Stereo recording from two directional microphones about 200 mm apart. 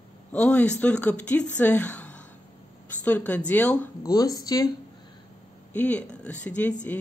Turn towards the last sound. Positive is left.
turn(degrees=5)  # may be behind; listen again after turning